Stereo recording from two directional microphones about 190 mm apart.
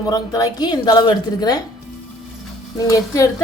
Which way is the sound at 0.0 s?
20° left (ahead or behind).